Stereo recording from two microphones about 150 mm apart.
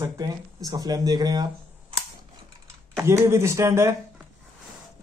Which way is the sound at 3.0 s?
20° right (ahead or behind).